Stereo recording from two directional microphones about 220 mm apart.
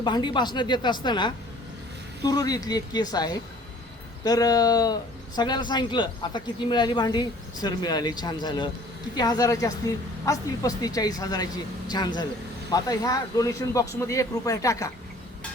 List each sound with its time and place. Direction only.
0.0 s speech: 20° left (ahead or behind)